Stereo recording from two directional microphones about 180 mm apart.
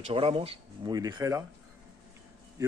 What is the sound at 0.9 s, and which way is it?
Speech, 20° right (ahead or behind).